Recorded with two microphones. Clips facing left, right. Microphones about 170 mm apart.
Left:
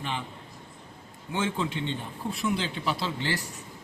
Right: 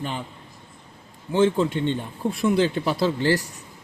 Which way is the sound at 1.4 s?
45° right (ahead or behind).